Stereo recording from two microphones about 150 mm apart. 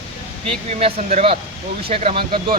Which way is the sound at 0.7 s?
40° right (ahead or behind).